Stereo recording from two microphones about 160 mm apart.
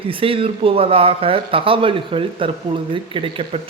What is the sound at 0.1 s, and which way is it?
A man's voice, 35° right (ahead or behind).